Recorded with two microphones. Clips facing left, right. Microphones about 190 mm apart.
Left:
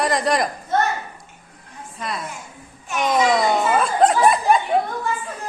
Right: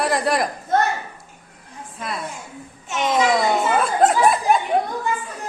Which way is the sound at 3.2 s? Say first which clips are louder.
Left 1 dB; centre (ahead or behind).